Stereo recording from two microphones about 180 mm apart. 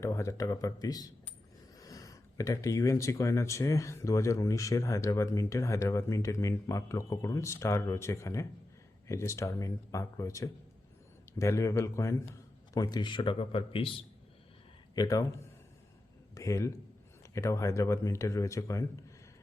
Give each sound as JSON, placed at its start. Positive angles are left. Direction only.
{"t": 0.0, "sound": "a man's voice", "side_deg": 15}
{"t": 14.9, "sound": "a man's voice", "side_deg": 20}
{"t": 16.3, "sound": "a man's voice", "side_deg": 15}